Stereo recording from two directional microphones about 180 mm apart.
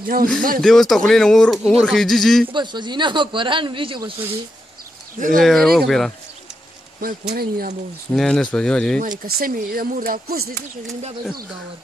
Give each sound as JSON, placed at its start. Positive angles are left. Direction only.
{"t": 0.0, "sound": "speech", "side_deg": -55}
{"t": 0.6, "sound": "speech", "side_deg": 0}
{"t": 2.5, "sound": "a man's voice", "side_deg": -25}
{"t": 5.4, "sound": "speech", "side_deg": 0}
{"t": 7.0, "sound": "speech", "side_deg": -55}
{"t": 8.1, "sound": "speech", "side_deg": 5}
{"t": 9.2, "sound": "speech", "side_deg": -55}